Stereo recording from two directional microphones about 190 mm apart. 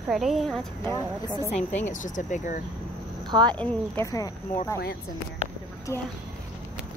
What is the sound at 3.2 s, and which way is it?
Speech, 25° right (ahead or behind).